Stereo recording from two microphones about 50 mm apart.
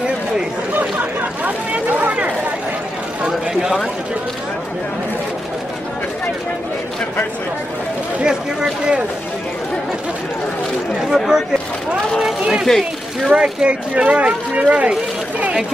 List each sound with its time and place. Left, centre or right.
1.4 s a sound: right
3.3 s a sound: centre
8.2 s speech: centre
11.1 s speech: centre
12.6 s speech: centre
13.3 s speech: right